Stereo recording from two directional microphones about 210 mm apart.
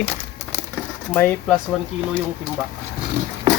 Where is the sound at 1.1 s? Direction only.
5° left (ahead or behind).